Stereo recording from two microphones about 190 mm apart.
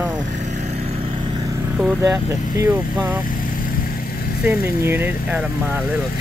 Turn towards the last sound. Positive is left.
turn(degrees=-10)  # may be behind; listen again after turning